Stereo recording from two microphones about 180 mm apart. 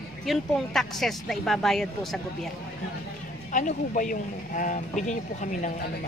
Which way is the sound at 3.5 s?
45° left (ahead or behind).